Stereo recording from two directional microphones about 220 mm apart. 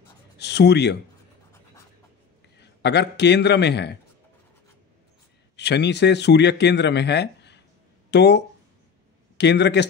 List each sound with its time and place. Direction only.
0.4 s a man's voice: 50° left (ahead or behind)
2.6 s a man's voice: 50° left (ahead or behind)
5.6 s a man's voice: 50° left (ahead or behind)
9.4 s a man's voice: 50° left (ahead or behind)